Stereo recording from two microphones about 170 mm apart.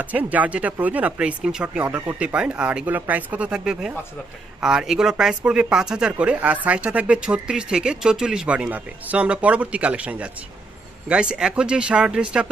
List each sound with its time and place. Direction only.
0.0 s speech: 10° right (ahead or behind)